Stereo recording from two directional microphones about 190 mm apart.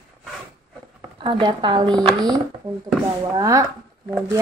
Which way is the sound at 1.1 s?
25° right (ahead or behind).